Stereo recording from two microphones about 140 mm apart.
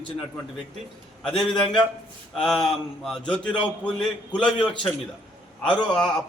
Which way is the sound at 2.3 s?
Centre (ahead or behind).